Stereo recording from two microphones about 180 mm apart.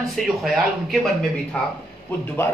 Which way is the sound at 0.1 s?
Centre (ahead or behind).